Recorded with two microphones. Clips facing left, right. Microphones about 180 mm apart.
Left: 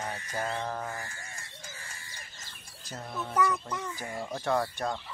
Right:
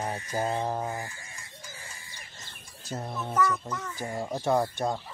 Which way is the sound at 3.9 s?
20° right (ahead or behind).